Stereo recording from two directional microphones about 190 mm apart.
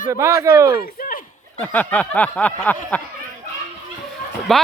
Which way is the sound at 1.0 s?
45° left (ahead or behind).